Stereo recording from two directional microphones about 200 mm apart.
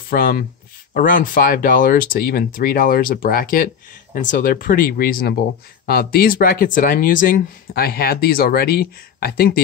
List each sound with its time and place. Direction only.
0.1 s speech: 45° left (ahead or behind)